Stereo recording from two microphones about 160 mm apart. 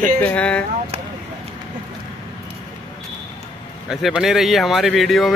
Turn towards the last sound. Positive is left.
turn(degrees=0)  # may be behind; listen again after turning